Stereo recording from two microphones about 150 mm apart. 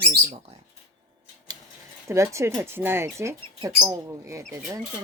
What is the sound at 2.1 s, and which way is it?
Cutlery, 20° right (ahead or behind).